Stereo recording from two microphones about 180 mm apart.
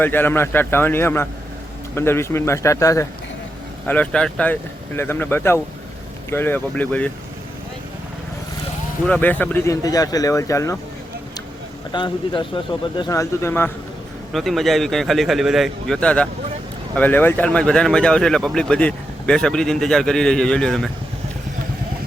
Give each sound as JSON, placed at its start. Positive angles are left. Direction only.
{"t": 0.0, "sound": "speech", "side_deg": 10}
{"t": 9.0, "sound": "speech", "side_deg": 10}
{"t": 11.9, "sound": "speech", "side_deg": 25}
{"t": 14.3, "sound": "speech", "side_deg": 0}